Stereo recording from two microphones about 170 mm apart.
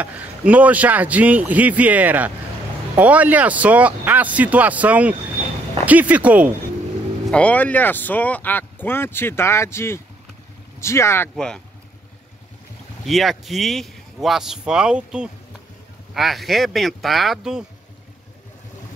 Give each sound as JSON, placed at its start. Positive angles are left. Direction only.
{"t": 0.0, "sound": "a man's voice", "side_deg": -10}
{"t": 7.2, "sound": "speech", "side_deg": 5}
{"t": 11.3, "sound": "speech", "side_deg": 5}
{"t": 13.0, "sound": "speech", "side_deg": 0}